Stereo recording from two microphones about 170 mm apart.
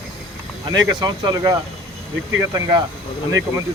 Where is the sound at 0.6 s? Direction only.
25° right (ahead or behind).